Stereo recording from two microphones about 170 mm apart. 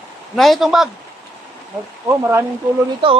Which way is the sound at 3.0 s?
30° right (ahead or behind).